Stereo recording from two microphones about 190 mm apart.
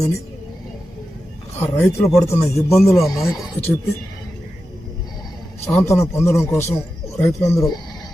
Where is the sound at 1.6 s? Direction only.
15° left (ahead or behind).